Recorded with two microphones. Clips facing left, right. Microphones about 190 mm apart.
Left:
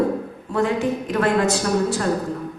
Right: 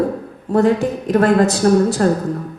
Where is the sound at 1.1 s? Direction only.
40° right (ahead or behind).